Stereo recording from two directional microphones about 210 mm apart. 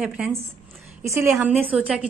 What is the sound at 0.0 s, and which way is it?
A woman's voice, 5° right (ahead or behind).